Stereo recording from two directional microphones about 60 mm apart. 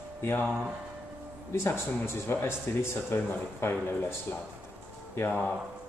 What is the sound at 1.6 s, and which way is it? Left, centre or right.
Speech, left.